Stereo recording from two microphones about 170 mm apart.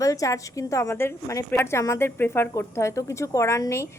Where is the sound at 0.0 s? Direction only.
20° left (ahead or behind).